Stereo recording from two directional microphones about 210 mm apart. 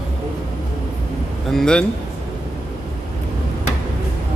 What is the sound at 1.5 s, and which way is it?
Speech, 5° left (ahead or behind).